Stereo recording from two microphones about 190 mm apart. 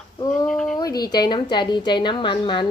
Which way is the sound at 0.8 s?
20° left (ahead or behind).